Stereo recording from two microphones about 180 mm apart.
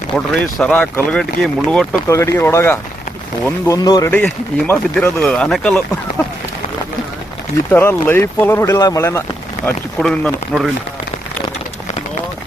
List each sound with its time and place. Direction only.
0.1 s speech: 5° left (ahead or behind)
2.0 s speech: 15° left (ahead or behind)
7.7 s speech: 10° left (ahead or behind)
9.6 s speech: 5° left (ahead or behind)